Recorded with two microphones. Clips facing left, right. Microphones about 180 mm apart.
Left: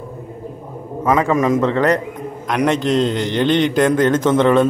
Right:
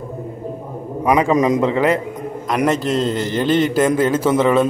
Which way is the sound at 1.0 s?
15° right (ahead or behind).